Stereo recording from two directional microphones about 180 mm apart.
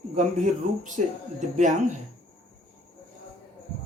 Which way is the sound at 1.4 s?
45° right (ahead or behind).